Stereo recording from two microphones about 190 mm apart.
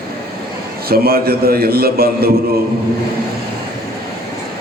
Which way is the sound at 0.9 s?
55° right (ahead or behind).